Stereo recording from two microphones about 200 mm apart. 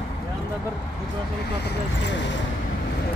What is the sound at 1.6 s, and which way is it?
Speech, 60° left (ahead or behind).